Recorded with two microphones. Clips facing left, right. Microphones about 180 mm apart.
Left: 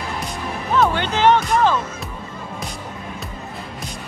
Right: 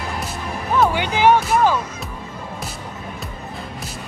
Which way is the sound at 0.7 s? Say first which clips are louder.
Even; 10° right (ahead or behind).